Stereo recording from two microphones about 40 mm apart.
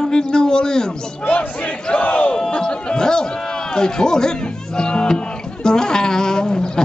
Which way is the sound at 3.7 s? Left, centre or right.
Centre.